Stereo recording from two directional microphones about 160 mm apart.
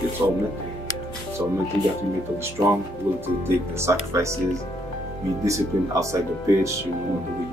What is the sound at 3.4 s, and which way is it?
Speech, 15° right (ahead or behind).